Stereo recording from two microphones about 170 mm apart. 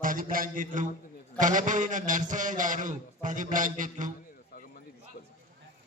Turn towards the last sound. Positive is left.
turn(degrees=-50)  # may be behind; listen again after turning